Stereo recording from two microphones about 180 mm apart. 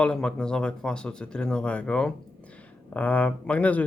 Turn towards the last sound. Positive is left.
turn(degrees=10)  # may be behind; listen again after turning